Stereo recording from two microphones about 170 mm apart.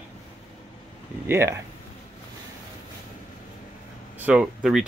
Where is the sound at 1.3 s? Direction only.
15° right (ahead or behind).